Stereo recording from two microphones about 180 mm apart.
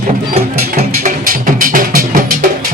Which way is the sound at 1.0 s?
45° right (ahead or behind).